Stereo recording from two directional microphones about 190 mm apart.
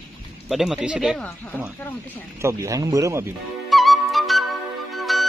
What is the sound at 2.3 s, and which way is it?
Speech, 15° right (ahead or behind).